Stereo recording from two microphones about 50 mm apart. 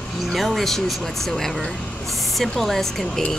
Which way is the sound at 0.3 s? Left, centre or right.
Centre.